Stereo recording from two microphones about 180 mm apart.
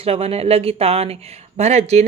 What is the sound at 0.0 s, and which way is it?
Speech, 35° right (ahead or behind).